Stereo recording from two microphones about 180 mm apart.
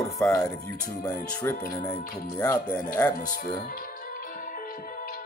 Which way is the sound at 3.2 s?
50° left (ahead or behind).